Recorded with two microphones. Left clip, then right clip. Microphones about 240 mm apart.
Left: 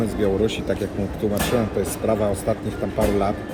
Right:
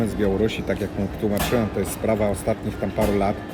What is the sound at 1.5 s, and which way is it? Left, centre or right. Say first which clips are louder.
Speech: left 1 dB; right.